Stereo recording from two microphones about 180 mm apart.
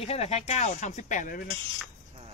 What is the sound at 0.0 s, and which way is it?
Speech, 35° left (ahead or behind).